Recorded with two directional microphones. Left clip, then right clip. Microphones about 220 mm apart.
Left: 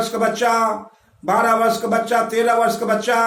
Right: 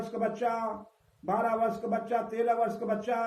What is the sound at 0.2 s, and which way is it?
Speech, 15° left (ahead or behind).